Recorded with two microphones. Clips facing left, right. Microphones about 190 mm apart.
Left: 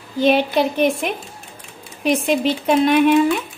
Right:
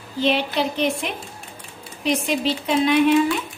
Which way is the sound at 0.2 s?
50° left (ahead or behind).